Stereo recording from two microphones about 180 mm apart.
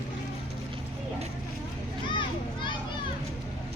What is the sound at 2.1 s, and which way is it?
Children playing, 25° left (ahead or behind).